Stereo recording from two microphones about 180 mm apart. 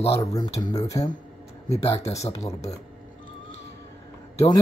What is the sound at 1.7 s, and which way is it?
A man's voice, 35° left (ahead or behind).